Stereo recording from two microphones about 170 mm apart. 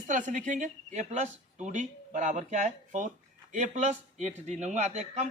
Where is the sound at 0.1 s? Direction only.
50° right (ahead or behind).